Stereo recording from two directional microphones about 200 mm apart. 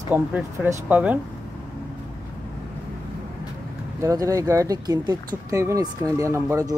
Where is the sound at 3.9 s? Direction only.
15° right (ahead or behind).